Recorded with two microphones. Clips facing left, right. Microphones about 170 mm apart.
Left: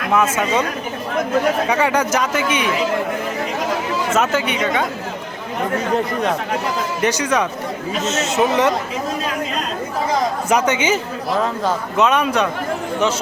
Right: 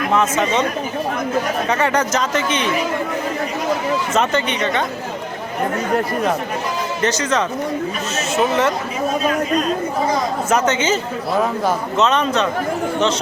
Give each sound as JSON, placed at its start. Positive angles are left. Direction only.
{"t": 0.1, "sound": "speech", "side_deg": 10}
{"t": 1.6, "sound": "speech", "side_deg": 10}
{"t": 4.1, "sound": "speech", "side_deg": 5}
{"t": 7.0, "sound": "speech", "side_deg": 10}
{"t": 10.5, "sound": "speech", "side_deg": 10}